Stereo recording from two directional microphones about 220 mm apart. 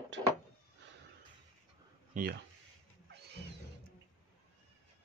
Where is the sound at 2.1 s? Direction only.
40° right (ahead or behind).